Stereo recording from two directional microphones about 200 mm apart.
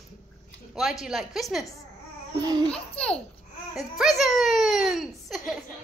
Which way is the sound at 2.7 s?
5° left (ahead or behind).